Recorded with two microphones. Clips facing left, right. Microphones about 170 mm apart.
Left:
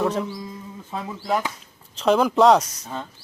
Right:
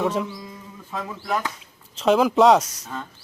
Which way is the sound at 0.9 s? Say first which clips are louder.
Left 2 dB; 25° left (ahead or behind).